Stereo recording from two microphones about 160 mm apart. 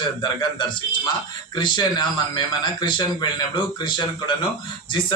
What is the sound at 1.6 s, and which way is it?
A man's voice, 30° left (ahead or behind).